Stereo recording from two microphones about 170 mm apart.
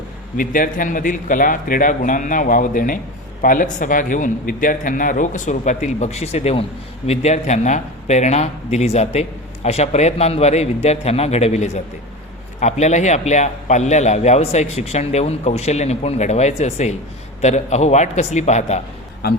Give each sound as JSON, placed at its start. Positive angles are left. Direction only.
{"t": 0.3, "sound": "a man's voice", "side_deg": 55}